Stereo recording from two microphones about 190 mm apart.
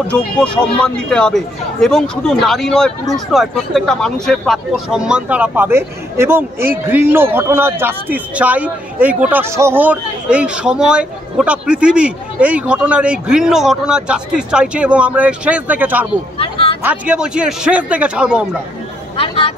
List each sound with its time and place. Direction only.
0.1 s a man's voice: 5° left (ahead or behind)
16.3 s a sound: 30° left (ahead or behind)
16.8 s a man's voice: 5° right (ahead or behind)
19.1 s speech: 30° left (ahead or behind)